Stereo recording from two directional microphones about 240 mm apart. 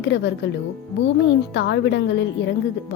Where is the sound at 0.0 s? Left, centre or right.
Left.